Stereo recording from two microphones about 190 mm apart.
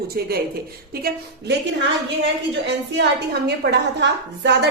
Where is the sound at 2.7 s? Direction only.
65° right (ahead or behind).